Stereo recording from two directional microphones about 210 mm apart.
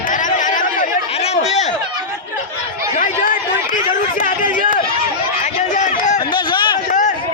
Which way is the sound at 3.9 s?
40° left (ahead or behind).